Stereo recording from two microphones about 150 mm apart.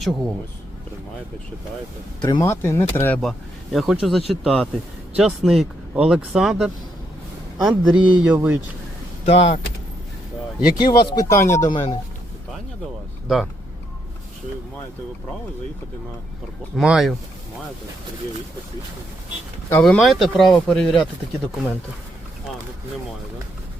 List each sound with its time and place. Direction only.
2.4 s speech: 15° left (ahead or behind)
3.2 s speech: centre (ahead or behind)
9.2 s speech: 45° left (ahead or behind)
10.8 s speech: 30° left (ahead or behind)
13.2 s speech: centre (ahead or behind)
16.7 s speech: centre (ahead or behind)
19.8 s speech: centre (ahead or behind)